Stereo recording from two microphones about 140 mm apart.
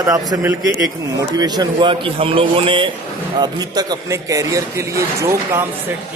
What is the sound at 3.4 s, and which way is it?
A man's voice, 30° right (ahead or behind).